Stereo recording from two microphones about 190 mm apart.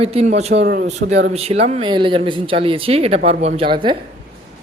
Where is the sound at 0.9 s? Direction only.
35° right (ahead or behind).